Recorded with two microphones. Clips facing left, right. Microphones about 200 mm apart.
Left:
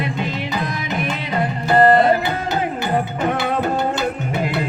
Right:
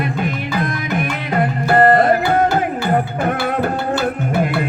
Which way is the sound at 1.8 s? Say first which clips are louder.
Even; 55° right (ahead or behind).